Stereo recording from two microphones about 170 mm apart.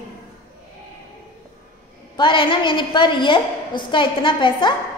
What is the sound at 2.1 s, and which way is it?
A woman's voice, 30° left (ahead or behind).